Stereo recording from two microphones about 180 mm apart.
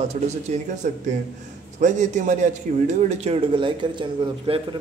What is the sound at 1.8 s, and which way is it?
A man's voice, 40° right (ahead or behind).